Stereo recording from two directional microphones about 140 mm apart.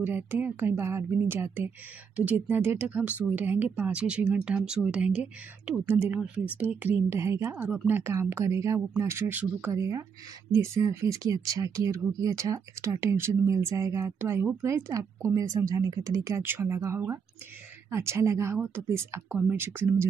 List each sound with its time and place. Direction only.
0.0 s speech: 15° right (ahead or behind)